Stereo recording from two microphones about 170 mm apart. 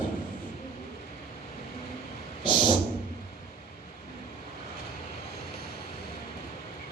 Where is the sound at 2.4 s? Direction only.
25° left (ahead or behind).